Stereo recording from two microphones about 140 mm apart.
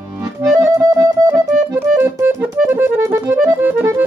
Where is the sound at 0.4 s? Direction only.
20° right (ahead or behind).